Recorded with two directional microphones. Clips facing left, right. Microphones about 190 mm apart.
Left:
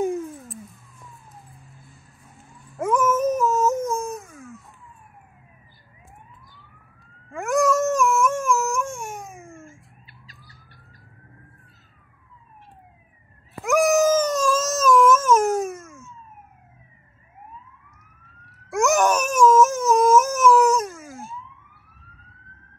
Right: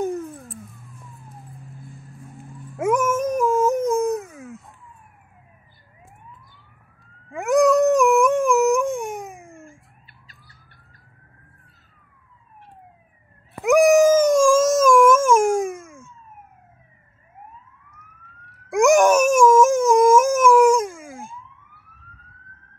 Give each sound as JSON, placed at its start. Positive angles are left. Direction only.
{"t": 0.0, "sound": "vehicle", "side_deg": 0}
{"t": 2.8, "sound": "dog", "side_deg": -10}
{"t": 7.3, "sound": "dog", "side_deg": -20}
{"t": 10.2, "sound": "squawk", "side_deg": -55}
{"t": 13.7, "sound": "dog", "side_deg": -15}
{"t": 18.7, "sound": "dog", "side_deg": -15}